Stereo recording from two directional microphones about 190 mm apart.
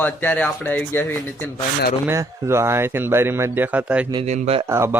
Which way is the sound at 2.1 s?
15° right (ahead or behind).